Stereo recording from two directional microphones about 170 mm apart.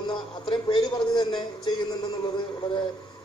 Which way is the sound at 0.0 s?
30° left (ahead or behind).